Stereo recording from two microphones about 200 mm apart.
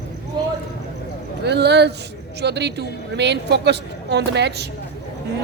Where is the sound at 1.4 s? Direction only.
55° right (ahead or behind).